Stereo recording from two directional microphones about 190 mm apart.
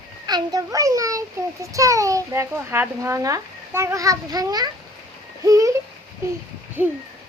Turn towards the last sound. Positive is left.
turn(degrees=-10)  # may be behind; listen again after turning